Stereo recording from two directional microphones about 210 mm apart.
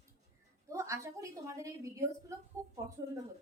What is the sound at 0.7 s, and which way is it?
A woman's voice, 15° right (ahead or behind).